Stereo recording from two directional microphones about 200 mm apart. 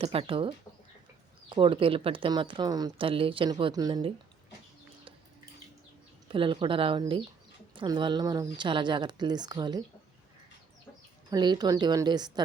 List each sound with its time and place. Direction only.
0.0 s a woman's voice: 30° right (ahead or behind)
6.2 s a woman's voice: 25° right (ahead or behind)
11.3 s a woman's voice: 20° right (ahead or behind)